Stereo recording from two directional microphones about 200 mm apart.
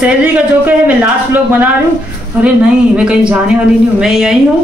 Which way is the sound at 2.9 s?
5° right (ahead or behind).